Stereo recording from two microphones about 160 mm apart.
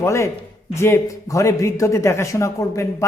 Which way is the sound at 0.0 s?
20° left (ahead or behind).